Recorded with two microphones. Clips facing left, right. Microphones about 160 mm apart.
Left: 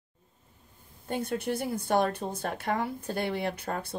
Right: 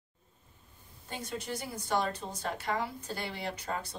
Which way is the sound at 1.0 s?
55° left (ahead or behind).